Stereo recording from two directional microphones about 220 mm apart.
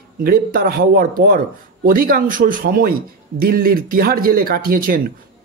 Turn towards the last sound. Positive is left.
turn(degrees=-40)  # may be behind; listen again after turning